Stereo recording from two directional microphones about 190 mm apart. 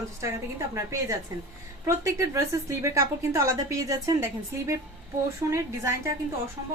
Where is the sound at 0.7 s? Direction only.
15° right (ahead or behind).